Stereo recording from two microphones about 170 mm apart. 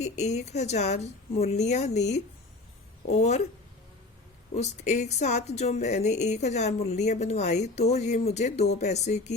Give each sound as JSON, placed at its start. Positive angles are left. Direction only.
{"t": 0.0, "sound": "speech", "side_deg": 40}
{"t": 4.5, "sound": "speech", "side_deg": 45}